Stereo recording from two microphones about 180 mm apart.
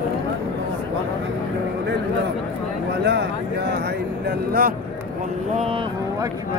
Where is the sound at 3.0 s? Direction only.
65° right (ahead or behind).